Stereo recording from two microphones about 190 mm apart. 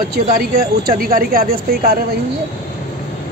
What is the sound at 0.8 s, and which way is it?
Speech, 50° right (ahead or behind).